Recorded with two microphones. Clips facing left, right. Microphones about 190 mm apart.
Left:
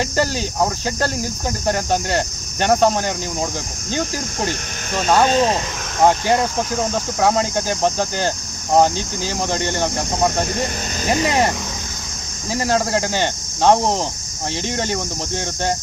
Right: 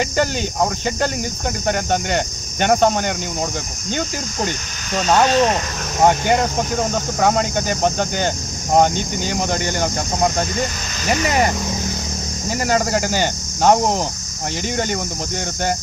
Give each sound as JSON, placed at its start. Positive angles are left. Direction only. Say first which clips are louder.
{"t": 0.0, "sound": "speech", "louder": "right 1 dB", "side_deg": 0}
{"t": 5.3, "sound": "cricket", "louder": "right 1 dB", "side_deg": 25}
{"t": 7.2, "sound": "speech", "louder": "even", "side_deg": 0}